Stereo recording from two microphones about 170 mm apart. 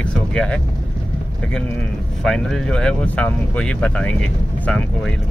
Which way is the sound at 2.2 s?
5° left (ahead or behind).